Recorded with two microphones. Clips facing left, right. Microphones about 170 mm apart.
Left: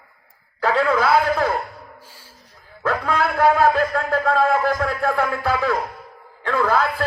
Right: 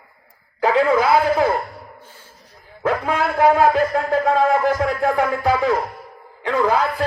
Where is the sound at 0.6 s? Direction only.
15° right (ahead or behind).